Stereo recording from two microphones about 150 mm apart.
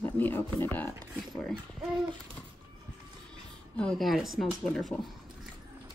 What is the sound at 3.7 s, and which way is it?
A woman's voice, 5° left (ahead or behind).